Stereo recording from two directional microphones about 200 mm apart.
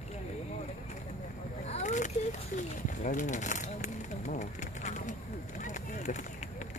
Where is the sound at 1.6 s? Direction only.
35° left (ahead or behind).